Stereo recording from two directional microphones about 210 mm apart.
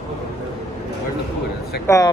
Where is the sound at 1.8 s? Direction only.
15° left (ahead or behind).